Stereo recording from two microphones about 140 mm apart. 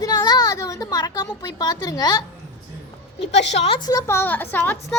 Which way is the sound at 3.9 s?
20° left (ahead or behind).